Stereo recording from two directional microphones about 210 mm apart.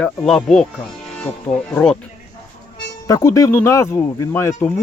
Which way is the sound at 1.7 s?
5° left (ahead or behind).